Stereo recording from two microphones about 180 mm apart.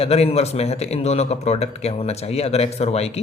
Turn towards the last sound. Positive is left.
turn(degrees=35)  # may be behind; listen again after turning